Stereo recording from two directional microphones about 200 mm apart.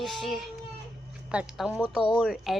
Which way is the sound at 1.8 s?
5° right (ahead or behind).